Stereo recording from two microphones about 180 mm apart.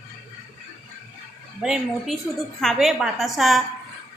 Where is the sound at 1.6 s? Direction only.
5° right (ahead or behind).